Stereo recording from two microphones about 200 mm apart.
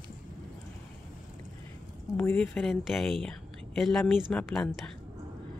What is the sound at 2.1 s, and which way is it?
Speech, 10° left (ahead or behind).